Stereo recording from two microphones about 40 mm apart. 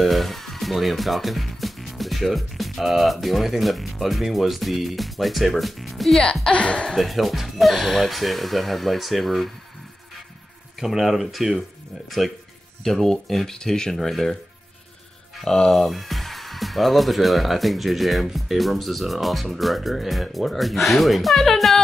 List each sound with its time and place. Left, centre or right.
0.0 s speech: centre
6.5 s speech: left
7.0 s speech: centre
10.8 s speech: centre
12.8 s speech: centre
15.4 s speech: centre
15.7 s speech: centre